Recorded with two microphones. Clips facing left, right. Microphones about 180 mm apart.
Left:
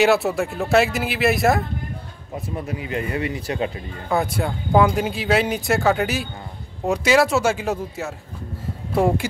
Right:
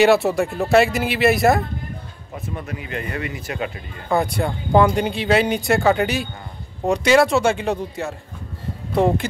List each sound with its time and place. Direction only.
0.0 s speech: centre (ahead or behind)
2.4 s speech: 30° left (ahead or behind)
4.1 s speech: centre (ahead or behind)